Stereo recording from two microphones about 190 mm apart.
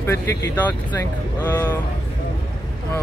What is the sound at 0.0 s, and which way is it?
Speech, 15° left (ahead or behind).